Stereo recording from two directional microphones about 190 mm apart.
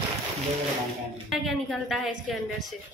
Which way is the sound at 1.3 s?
Centre (ahead or behind).